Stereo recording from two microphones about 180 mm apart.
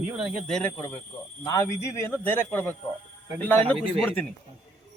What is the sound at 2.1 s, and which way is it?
A man's voice, 10° left (ahead or behind).